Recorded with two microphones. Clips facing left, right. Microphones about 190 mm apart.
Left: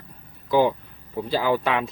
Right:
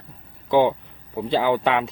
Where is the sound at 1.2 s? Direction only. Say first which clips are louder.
Right 2 dB; 20° right (ahead or behind).